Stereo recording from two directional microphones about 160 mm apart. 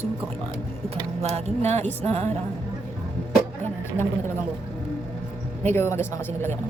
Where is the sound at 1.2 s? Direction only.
40° right (ahead or behind).